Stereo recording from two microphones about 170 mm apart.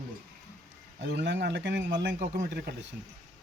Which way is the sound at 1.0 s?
90° right.